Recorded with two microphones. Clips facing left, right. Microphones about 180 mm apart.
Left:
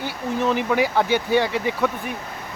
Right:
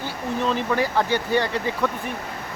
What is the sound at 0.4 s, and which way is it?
Speech, 10° left (ahead or behind).